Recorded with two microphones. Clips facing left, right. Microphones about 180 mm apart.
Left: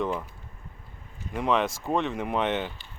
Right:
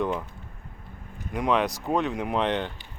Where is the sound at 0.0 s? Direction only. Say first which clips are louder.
Right 1 dB; centre (ahead or behind).